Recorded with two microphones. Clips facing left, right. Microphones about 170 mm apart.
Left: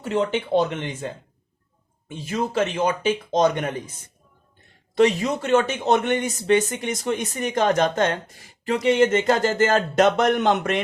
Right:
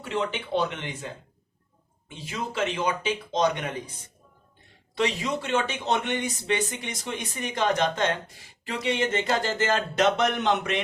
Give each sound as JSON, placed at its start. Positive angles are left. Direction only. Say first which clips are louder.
{"t": 0.0, "sound": "a man's voice", "louder": "left 6 dB", "side_deg": 45}
{"t": 2.0, "sound": "a man's voice", "louder": "left 7 dB", "side_deg": 45}
{"t": 4.9, "sound": "a man's voice", "louder": "left 8 dB", "side_deg": 45}